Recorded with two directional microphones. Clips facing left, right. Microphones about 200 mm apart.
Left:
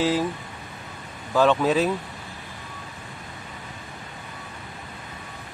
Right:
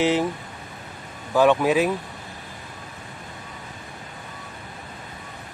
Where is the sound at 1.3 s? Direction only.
15° right (ahead or behind).